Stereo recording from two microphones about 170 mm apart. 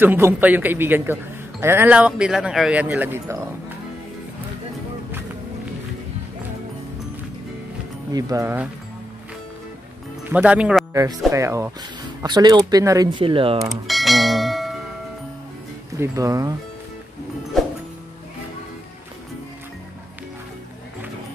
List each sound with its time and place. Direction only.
0.0 s speech: 10° right (ahead or behind)
8.1 s speech: 20° right (ahead or behind)
10.3 s speech: 5° right (ahead or behind)
10.9 s speech: 20° right (ahead or behind)
13.1 s speech: 30° right (ahead or behind)
13.7 s bell: centre (ahead or behind)
16.0 s speech: 20° right (ahead or behind)